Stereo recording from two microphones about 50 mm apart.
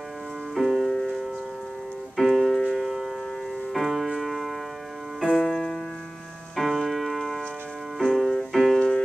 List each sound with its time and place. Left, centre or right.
0.6 s music: centre
2.1 s piano: centre
2.7 s civil defense siren: centre
3.7 s music: centre
8.7 s music: centre